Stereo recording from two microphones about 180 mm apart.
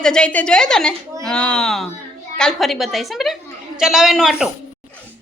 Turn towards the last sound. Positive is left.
turn(degrees=-5)  # may be behind; listen again after turning